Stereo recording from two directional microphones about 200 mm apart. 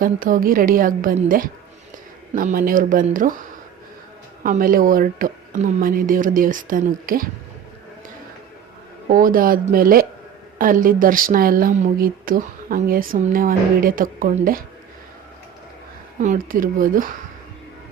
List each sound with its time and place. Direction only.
0.0 s a woman's voice: 45° right (ahead or behind)
4.4 s a woman's voice: 45° right (ahead or behind)
9.0 s a woman's voice: 45° right (ahead or behind)
16.2 s a woman's voice: 40° right (ahead or behind)